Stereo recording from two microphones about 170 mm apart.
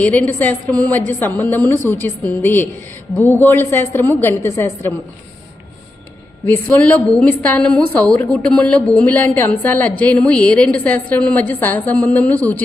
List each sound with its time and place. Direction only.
0.0 s a woman's voice: 10° left (ahead or behind)
6.4 s a woman's voice: 10° left (ahead or behind)